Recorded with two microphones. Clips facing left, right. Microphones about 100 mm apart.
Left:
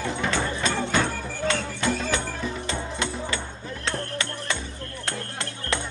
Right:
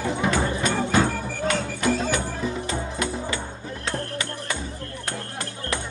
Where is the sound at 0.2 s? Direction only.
15° right (ahead or behind).